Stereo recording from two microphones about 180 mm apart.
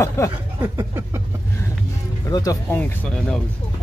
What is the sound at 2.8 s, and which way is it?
Speech, 5° left (ahead or behind).